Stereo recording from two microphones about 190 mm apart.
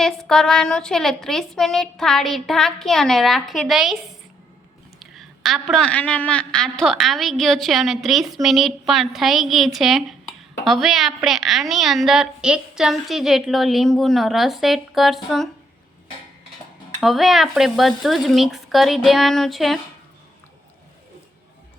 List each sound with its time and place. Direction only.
0.0 s a woman's voice: centre (ahead or behind)
4.9 s a woman's voice: centre (ahead or behind)
17.0 s a woman's voice: centre (ahead or behind)